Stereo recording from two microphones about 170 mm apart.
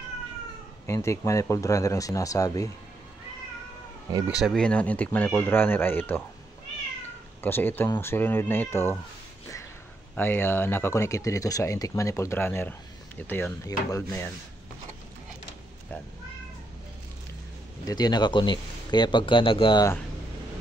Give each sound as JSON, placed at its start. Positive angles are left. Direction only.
{"t": 0.8, "sound": "speech", "side_deg": 15}
{"t": 4.4, "sound": "speech", "side_deg": 5}
{"t": 7.4, "sound": "speech", "side_deg": 10}
{"t": 10.1, "sound": "speech", "side_deg": 15}
{"t": 17.8, "sound": "speech", "side_deg": 25}